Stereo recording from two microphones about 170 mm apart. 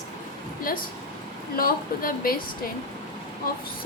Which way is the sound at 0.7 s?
55° left (ahead or behind).